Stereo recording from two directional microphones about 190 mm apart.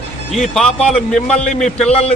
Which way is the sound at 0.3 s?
Centre (ahead or behind).